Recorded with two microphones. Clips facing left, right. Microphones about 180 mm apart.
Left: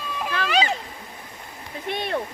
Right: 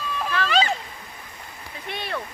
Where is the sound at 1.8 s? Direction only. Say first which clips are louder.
Left 5 dB; 50° left (ahead or behind).